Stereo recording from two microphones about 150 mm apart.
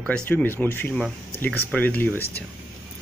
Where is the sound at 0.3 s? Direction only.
15° left (ahead or behind).